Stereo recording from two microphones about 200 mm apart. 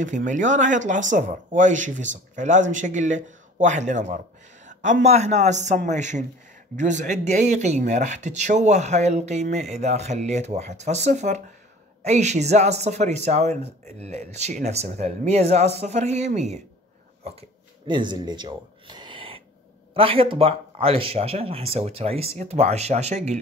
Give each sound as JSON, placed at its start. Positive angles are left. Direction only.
{"t": 0.0, "sound": "speech", "side_deg": -40}
{"t": 17.2, "sound": "a sound", "side_deg": -25}
{"t": 19.9, "sound": "speech", "side_deg": -25}